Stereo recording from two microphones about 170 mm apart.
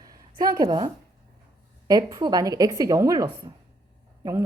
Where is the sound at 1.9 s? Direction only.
25° right (ahead or behind).